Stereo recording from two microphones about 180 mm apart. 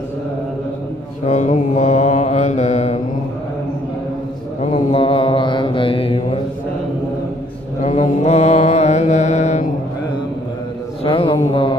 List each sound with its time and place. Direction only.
1.2 s mantra: 40° left (ahead or behind)
4.6 s mantra: 35° left (ahead or behind)
7.8 s mantra: 40° left (ahead or behind)
11.1 s mantra: 30° left (ahead or behind)